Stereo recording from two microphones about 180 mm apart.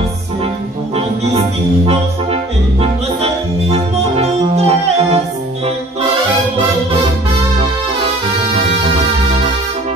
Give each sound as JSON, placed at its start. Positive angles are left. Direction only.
{"t": 2.8, "sound": "music", "side_deg": -35}